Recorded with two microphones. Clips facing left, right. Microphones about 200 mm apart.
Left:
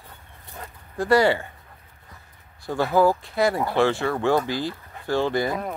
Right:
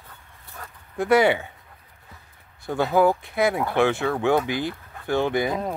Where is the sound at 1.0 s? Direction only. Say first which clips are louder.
Even; 20° right (ahead or behind).